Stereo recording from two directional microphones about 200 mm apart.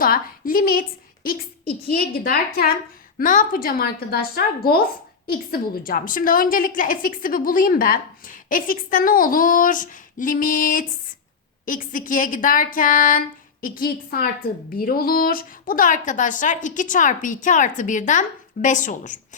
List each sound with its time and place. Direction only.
0.0 s a woman's voice: 45° left (ahead or behind)